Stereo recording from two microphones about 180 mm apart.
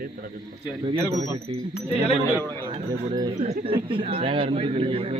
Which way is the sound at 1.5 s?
30° right (ahead or behind).